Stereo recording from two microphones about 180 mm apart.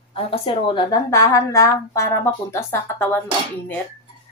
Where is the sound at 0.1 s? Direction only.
30° left (ahead or behind); by 3.2 s 10° left (ahead or behind).